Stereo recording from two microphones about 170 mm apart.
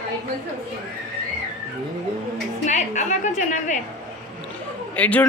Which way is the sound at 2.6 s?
45° left (ahead or behind).